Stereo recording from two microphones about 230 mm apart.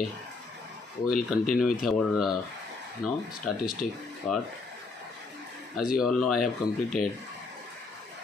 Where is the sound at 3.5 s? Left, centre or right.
Centre.